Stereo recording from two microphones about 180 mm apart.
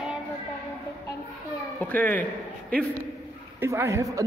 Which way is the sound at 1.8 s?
10° left (ahead or behind).